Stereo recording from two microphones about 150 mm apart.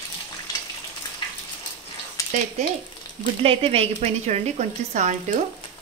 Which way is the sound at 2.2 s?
20° left (ahead or behind).